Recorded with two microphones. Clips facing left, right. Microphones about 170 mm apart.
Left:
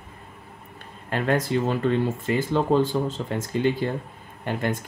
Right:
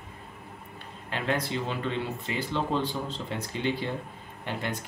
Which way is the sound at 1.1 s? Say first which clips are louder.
Left 6 dB; 45° left (ahead or behind).